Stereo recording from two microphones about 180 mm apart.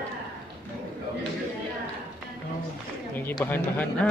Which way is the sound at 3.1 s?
10° left (ahead or behind).